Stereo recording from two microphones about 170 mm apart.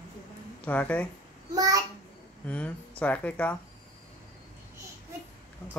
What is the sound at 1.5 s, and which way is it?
Speech, 20° right (ahead or behind).